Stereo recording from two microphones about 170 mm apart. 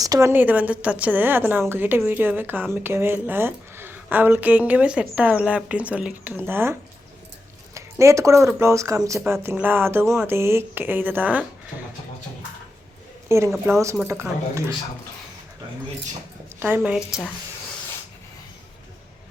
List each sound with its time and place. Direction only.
0.0 s a woman's voice: 20° right (ahead or behind)
13.2 s a woman's voice: 15° right (ahead or behind)
16.6 s a woman's voice: 10° right (ahead or behind)